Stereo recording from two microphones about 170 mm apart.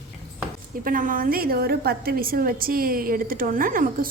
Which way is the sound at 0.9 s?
55° right (ahead or behind).